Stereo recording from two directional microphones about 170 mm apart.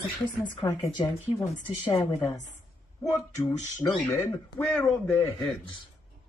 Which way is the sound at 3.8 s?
20° left (ahead or behind).